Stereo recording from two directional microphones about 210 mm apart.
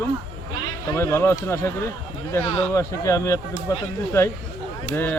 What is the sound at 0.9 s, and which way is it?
Speech, 10° left (ahead or behind).